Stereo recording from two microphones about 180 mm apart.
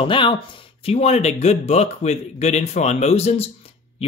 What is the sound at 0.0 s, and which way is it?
Speech, 30° left (ahead or behind).